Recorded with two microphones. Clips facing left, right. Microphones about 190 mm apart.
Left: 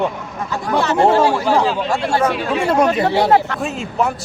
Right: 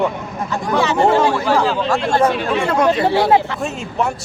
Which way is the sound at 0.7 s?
10° left (ahead or behind).